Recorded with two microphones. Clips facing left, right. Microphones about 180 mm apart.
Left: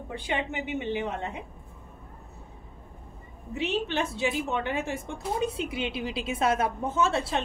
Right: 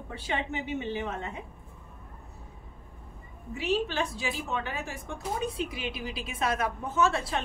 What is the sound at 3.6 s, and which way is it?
A woman's voice, 25° left (ahead or behind).